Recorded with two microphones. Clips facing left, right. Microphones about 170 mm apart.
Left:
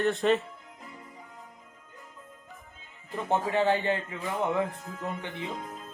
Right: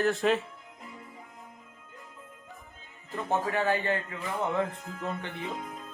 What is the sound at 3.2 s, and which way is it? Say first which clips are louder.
Speech: left 2 dB; 20° left (ahead or behind).